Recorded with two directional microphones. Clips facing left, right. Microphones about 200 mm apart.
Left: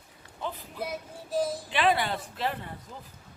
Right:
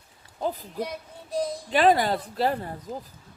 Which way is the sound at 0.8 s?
5° left (ahead or behind).